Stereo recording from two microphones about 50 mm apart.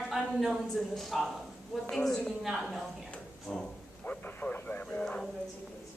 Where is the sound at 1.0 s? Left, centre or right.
Centre.